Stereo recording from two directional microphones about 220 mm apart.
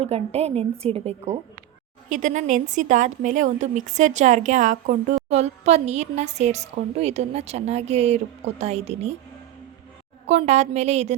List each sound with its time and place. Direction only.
0.0 s a woman's voice: 30° right (ahead or behind)
10.2 s a woman's voice: 30° right (ahead or behind)